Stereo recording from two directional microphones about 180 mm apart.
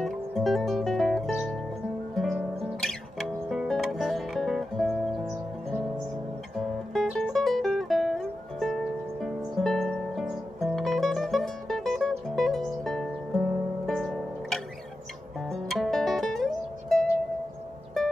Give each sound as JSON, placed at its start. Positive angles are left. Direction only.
{"t": 0.0, "sound": "music", "side_deg": 0}
{"t": 6.9, "sound": "music", "side_deg": 5}